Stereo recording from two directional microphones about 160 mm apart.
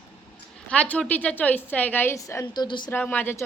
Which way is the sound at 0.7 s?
5° left (ahead or behind).